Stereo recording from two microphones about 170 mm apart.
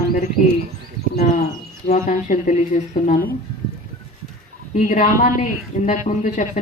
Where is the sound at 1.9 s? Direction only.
45° left (ahead or behind).